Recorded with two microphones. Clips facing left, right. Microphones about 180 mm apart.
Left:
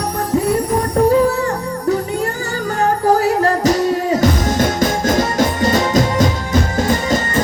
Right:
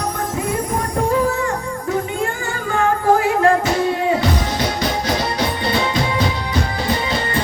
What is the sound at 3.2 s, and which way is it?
Music, 40° left (ahead or behind).